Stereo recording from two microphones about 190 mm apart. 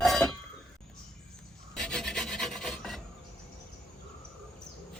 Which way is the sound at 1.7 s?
5° left (ahead or behind).